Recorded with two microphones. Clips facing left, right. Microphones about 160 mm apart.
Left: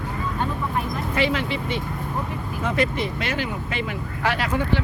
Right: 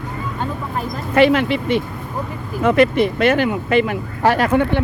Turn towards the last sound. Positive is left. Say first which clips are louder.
# right 8 dB
turn(degrees=-55)  # may be behind; listen again after turning